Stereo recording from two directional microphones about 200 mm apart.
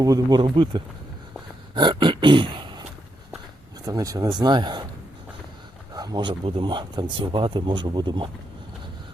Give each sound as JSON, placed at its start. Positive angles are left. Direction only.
{"t": 0.0, "sound": "speech", "side_deg": -20}
{"t": 1.7, "sound": "a sound", "side_deg": -25}
{"t": 3.8, "sound": "speech", "side_deg": -15}
{"t": 5.9, "sound": "speech", "side_deg": -20}